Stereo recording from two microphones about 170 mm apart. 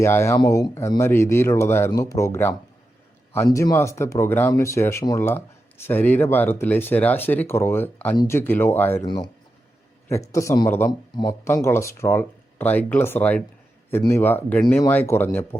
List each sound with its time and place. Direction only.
0.0 s speech: 15° left (ahead or behind)
8.1 s speech: 25° left (ahead or behind)
8.4 s speech: 10° left (ahead or behind)
10.1 s speech: 20° left (ahead or behind)